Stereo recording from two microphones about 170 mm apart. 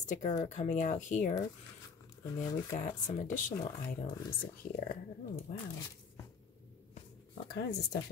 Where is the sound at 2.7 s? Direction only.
50° left (ahead or behind).